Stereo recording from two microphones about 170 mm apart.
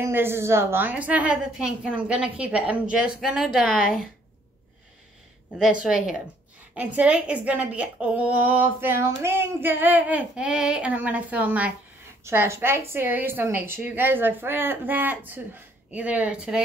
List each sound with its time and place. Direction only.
0.0 s a woman's voice: 15° right (ahead or behind)
5.6 s a woman's voice: 5° right (ahead or behind)